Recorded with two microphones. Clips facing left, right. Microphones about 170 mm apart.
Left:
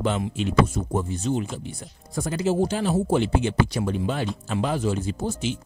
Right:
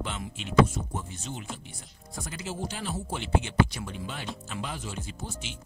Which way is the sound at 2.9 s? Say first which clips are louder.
Left 9 dB; 40° left (ahead or behind).